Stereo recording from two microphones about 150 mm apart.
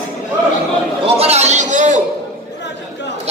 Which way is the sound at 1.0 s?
40° right (ahead or behind).